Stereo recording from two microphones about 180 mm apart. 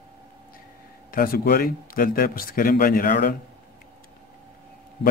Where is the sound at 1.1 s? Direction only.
50° left (ahead or behind).